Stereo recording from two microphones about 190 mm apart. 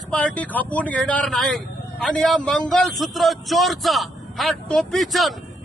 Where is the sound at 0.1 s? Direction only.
5° left (ahead or behind).